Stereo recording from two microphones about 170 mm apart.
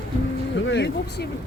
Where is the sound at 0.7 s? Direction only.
85° left.